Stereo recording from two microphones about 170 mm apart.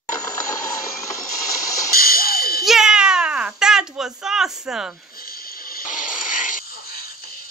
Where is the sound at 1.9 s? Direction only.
60° left (ahead or behind).